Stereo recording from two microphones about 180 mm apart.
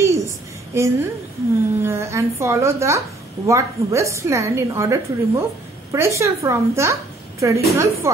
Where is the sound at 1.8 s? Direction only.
15° right (ahead or behind).